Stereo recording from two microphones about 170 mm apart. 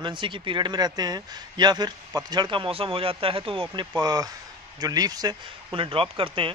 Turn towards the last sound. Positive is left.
turn(degrees=-30)  # may be behind; listen again after turning